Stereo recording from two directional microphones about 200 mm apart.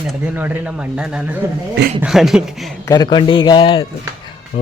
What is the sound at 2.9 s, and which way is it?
Speech, 20° left (ahead or behind).